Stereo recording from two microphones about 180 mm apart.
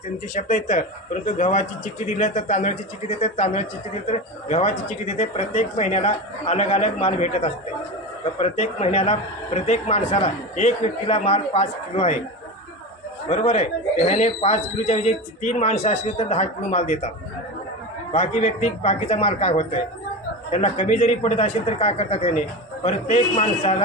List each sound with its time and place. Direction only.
0.3 s speech: 40° left (ahead or behind)
13.2 s speech: 35° left (ahead or behind)
18.1 s speech: 40° left (ahead or behind)